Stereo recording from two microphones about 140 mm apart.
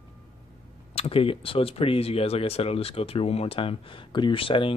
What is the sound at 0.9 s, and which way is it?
Speech, 45° left (ahead or behind).